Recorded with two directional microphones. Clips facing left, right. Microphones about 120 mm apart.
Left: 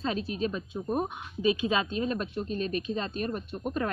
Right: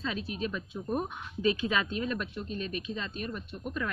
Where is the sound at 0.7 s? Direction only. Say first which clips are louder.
Left 3 dB; 20° left (ahead or behind).